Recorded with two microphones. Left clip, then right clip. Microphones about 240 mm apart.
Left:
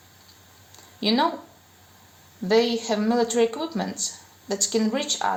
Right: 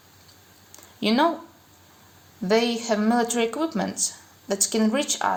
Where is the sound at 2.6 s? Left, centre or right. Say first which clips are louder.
Left 3 dB; right.